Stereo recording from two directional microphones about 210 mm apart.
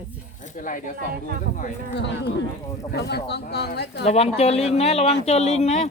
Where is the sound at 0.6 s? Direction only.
40° left (ahead or behind).